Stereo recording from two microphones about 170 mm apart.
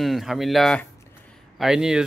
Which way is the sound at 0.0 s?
Centre (ahead or behind).